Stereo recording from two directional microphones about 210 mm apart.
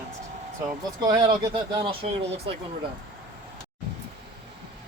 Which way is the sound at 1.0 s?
20° right (ahead or behind).